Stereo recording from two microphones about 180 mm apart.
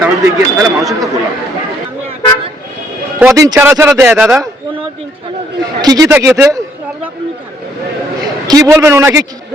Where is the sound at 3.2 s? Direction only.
15° right (ahead or behind).